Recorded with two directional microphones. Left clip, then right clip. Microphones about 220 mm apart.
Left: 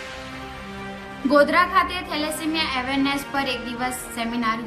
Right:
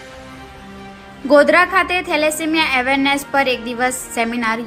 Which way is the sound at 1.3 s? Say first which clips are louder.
Right 6 dB; 15° right (ahead or behind).